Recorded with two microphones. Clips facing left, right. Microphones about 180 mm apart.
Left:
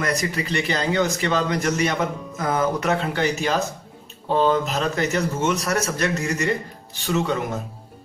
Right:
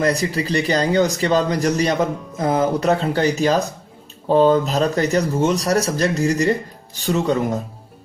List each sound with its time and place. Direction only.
0.0 s speech: 30° right (ahead or behind)